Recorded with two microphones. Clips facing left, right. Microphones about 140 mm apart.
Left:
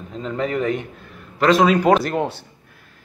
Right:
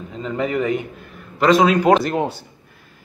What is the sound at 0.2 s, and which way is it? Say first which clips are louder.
Speech: right 1 dB; 5° right (ahead or behind).